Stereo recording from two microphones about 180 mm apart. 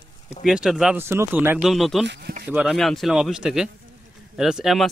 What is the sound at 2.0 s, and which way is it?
Speech, 70° right (ahead or behind).